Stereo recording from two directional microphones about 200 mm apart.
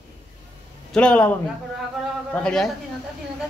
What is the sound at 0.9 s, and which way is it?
A man's voice, 5° left (ahead or behind).